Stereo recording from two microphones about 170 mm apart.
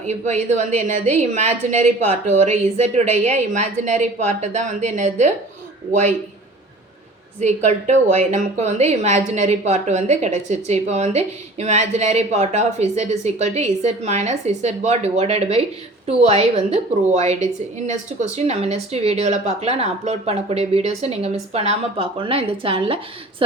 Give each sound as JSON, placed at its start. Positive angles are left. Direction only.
{"t": 0.0, "sound": "a woman's voice", "side_deg": -45}
{"t": 7.3, "sound": "a woman's voice", "side_deg": -45}